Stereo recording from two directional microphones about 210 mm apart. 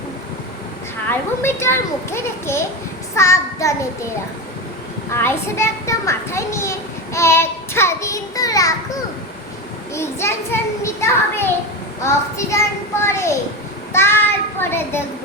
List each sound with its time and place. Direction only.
1.4 s a child's voice: 10° left (ahead or behind)
5.1 s a child's voice: 10° left (ahead or behind)